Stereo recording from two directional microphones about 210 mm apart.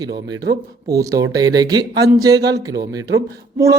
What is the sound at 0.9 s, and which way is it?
Speech, 15° right (ahead or behind).